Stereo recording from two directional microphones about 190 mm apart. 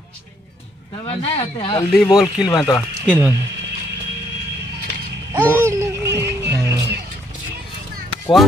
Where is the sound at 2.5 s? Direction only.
20° left (ahead or behind).